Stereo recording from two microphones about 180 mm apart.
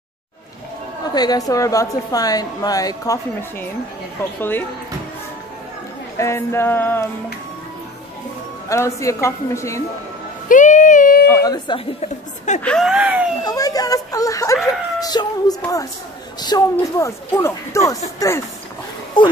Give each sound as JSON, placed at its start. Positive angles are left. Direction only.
{"t": 1.1, "sound": "a woman's voice", "side_deg": 20}
{"t": 6.1, "sound": "speech", "side_deg": 15}
{"t": 8.6, "sound": "speech", "side_deg": 15}
{"t": 10.5, "sound": "a sound", "side_deg": 45}
{"t": 11.2, "sound": "a woman's voice", "side_deg": 20}
{"t": 12.6, "sound": "a sound", "side_deg": 0}
{"t": 13.4, "sound": "a woman's voice", "side_deg": 20}